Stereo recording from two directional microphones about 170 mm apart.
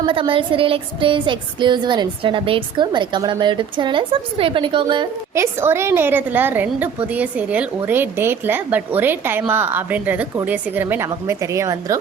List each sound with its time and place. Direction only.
0.0 s a woman's voice: 30° right (ahead or behind)
5.3 s a woman's voice: 15° right (ahead or behind)